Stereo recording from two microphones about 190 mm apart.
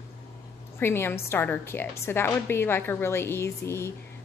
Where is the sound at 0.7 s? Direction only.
10° left (ahead or behind).